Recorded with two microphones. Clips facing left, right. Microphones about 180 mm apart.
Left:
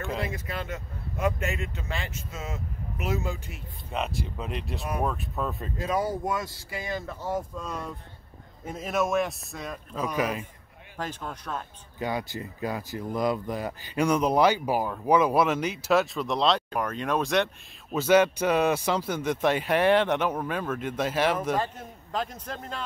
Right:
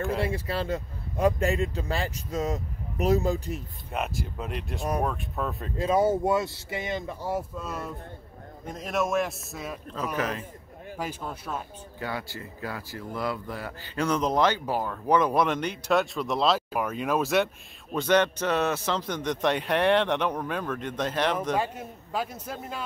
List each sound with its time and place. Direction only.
0.2 s speech: 30° right (ahead or behind)
3.9 s a man's voice: 5° right (ahead or behind)
5.8 s a man's voice: 25° right (ahead or behind); by 9.8 s 5° right (ahead or behind)
10.1 s speech: 10° left (ahead or behind)
11.0 s a man's voice: 10° right (ahead or behind)
12.0 s speech: 20° left (ahead or behind); by 17.5 s 5° right (ahead or behind)
17.9 s speech: 5° left (ahead or behind)
21.5 s a man's voice: 10° right (ahead or behind)